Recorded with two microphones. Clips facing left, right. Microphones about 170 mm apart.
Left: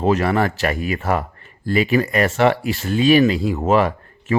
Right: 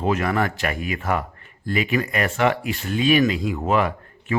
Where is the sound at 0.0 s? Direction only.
35° left (ahead or behind).